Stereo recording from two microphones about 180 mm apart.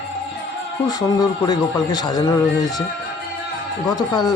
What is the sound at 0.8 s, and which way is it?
A man's voice, 20° left (ahead or behind).